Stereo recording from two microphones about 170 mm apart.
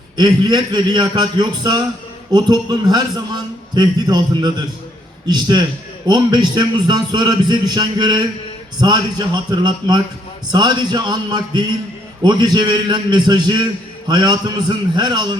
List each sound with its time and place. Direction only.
0.2 s a man's voice: 25° right (ahead or behind)